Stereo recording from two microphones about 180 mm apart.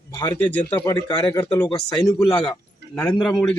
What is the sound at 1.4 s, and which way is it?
Speech, 15° left (ahead or behind).